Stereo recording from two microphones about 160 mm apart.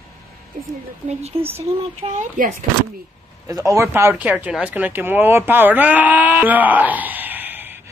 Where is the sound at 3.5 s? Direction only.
20° right (ahead or behind).